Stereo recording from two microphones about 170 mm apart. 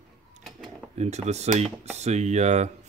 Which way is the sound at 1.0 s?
40° right (ahead or behind).